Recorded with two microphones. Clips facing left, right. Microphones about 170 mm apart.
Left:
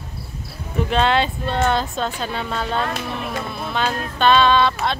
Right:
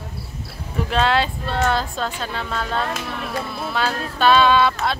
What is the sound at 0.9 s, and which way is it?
Speech, centre (ahead or behind).